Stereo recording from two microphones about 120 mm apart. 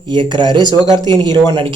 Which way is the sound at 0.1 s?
40° right (ahead or behind).